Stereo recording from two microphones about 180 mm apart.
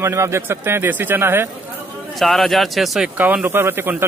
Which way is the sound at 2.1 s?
Centre (ahead or behind).